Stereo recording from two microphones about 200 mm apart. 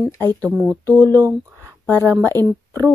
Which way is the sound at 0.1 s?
10° left (ahead or behind).